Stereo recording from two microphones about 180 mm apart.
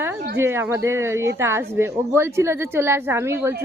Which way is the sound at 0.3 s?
15° right (ahead or behind).